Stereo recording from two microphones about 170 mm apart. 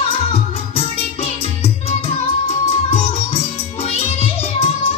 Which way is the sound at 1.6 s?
35° left (ahead or behind).